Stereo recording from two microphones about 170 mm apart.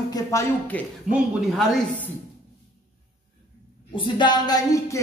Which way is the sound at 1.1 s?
5° right (ahead or behind).